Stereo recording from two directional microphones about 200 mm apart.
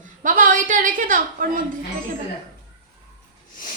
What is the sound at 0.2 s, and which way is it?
A woman's voice, 40° right (ahead or behind).